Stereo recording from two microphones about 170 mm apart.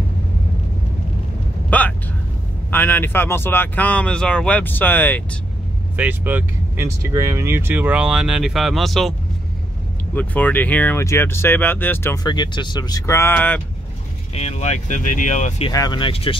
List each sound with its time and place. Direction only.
1.7 s speech: 10° left (ahead or behind)
5.9 s speech: 10° right (ahead or behind)
10.1 s speech: 10° left (ahead or behind)
12.3 s speech: 25° left (ahead or behind); by 13.6 s 10° left (ahead or behind)
14.3 s speech: 40° left (ahead or behind)
15.7 s speech: 25° left (ahead or behind)